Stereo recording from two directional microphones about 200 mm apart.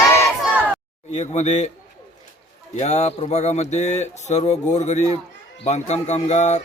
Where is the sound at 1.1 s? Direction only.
35° left (ahead or behind).